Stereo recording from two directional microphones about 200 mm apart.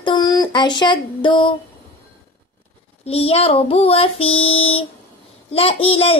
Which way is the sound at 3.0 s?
30° left (ahead or behind).